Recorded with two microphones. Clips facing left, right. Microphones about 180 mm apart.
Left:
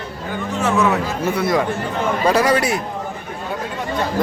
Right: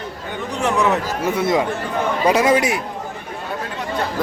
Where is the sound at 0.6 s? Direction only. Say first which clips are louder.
Left 1 dB; 15° right (ahead or behind).